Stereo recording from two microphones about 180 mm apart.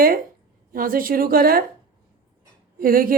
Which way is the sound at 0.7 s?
50° right (ahead or behind).